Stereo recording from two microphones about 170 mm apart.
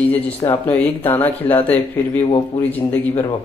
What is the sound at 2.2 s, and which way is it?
Speech, 30° left (ahead or behind).